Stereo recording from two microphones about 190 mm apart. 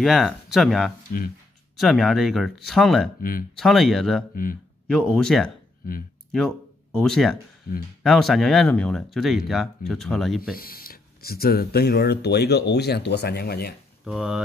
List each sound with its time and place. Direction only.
0.0 s speech: centre (ahead or behind)
3.2 s speech: 45° left (ahead or behind)
3.5 s speech: centre (ahead or behind)
10.5 s speech: 50° left (ahead or behind)
14.0 s speech: 5° right (ahead or behind)